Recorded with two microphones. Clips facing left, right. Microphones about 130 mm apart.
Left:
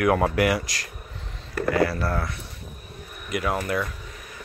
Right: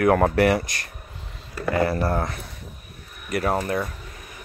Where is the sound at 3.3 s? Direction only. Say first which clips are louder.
Right 2 dB; 35° right (ahead or behind).